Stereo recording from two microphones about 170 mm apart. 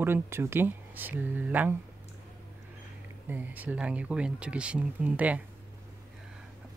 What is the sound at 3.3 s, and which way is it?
Speech, 10° right (ahead or behind).